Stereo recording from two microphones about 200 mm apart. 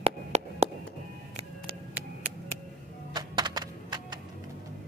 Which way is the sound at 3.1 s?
20° right (ahead or behind).